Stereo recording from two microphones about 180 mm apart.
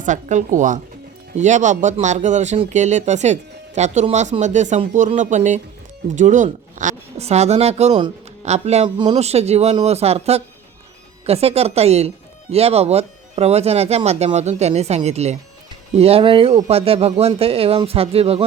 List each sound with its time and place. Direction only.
0.0 s speech: 45° right (ahead or behind)